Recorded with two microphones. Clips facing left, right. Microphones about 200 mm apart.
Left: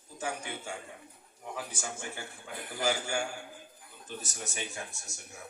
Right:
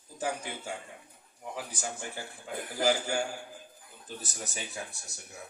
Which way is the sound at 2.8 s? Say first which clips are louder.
Right 3 dB; 35° right (ahead or behind).